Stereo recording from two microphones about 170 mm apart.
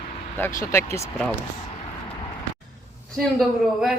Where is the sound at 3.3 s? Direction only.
Centre (ahead or behind).